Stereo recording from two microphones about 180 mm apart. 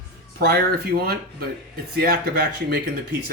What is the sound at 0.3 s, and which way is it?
Speech, 60° right (ahead or behind).